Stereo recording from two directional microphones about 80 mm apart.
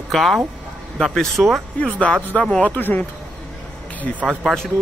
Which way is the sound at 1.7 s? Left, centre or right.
Centre.